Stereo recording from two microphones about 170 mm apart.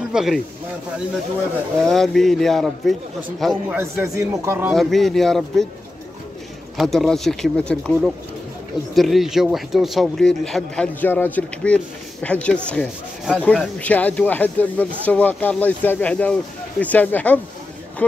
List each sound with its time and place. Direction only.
0.1 s speech: centre (ahead or behind)
1.9 s speech: centre (ahead or behind)
3.7 s speech: 15° right (ahead or behind)
4.7 s speech: centre (ahead or behind)
6.8 s speech: centre (ahead or behind)